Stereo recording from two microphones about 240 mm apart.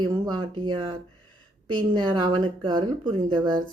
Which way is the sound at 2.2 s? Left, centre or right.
Centre.